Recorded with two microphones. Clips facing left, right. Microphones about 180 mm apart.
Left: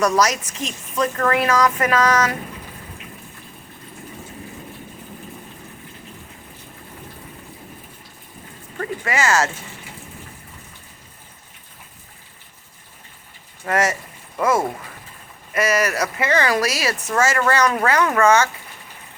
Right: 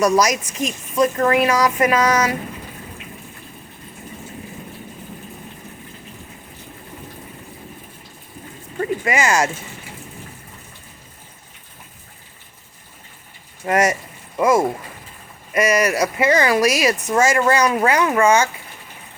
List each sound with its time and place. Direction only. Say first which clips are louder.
0.0 s speech: right 2 dB; 10° right (ahead or behind)
8.8 s speech: right 3 dB; 15° right (ahead or behind)
13.7 s speech: right 3 dB; 15° right (ahead or behind)